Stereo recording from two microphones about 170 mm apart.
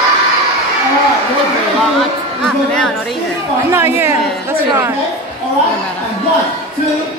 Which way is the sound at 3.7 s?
15° right (ahead or behind).